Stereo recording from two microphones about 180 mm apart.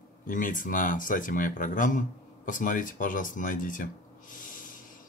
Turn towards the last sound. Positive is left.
turn(degrees=45)  # may be behind; listen again after turning